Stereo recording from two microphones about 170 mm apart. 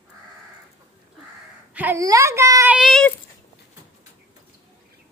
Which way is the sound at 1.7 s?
10° right (ahead or behind).